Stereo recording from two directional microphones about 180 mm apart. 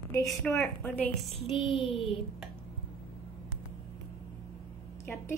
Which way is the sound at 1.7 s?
30° left (ahead or behind).